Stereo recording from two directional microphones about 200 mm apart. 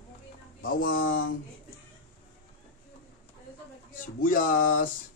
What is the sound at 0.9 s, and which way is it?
Speech, 75° left (ahead or behind).